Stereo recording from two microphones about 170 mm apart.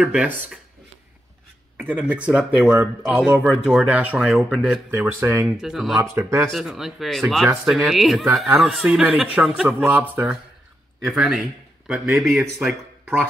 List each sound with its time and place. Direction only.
0.0 s speech: 5° right (ahead or behind)
2.0 s speech: 5° right (ahead or behind)
5.6 s speech: centre (ahead or behind)
5.9 s speech: 15° right (ahead or behind)
6.5 s speech: centre (ahead or behind)